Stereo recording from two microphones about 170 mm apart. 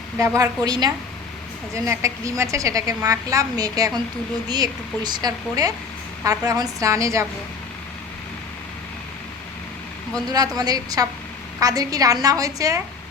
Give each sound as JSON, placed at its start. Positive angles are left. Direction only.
{"t": 0.2, "sound": "a woman's voice", "side_deg": -20}
{"t": 10.2, "sound": "a woman's voice", "side_deg": -20}